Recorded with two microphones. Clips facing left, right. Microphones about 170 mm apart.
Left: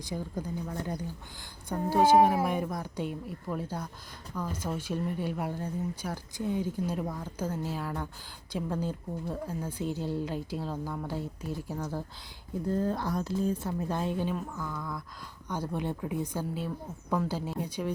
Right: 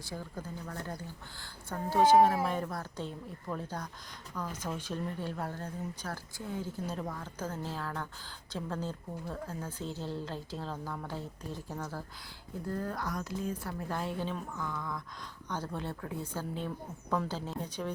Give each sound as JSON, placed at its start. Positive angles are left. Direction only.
{"t": 0.0, "sound": "speech", "side_deg": 15}
{"t": 14.3, "sound": "speech", "side_deg": 5}